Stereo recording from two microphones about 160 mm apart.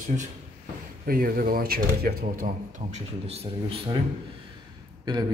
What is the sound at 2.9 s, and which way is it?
A man's voice, 40° right (ahead or behind).